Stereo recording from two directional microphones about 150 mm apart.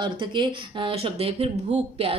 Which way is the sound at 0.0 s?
30° right (ahead or behind).